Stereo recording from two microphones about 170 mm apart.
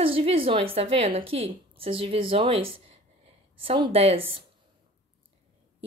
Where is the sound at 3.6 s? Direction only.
30° right (ahead or behind).